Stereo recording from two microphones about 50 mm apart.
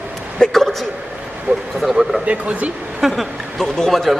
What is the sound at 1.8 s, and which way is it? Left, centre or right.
Speech, centre.